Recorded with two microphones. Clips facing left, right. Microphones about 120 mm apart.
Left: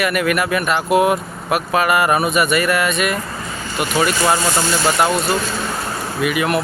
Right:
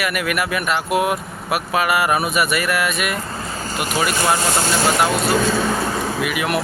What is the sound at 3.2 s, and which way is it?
Vehicle, 30° right (ahead or behind).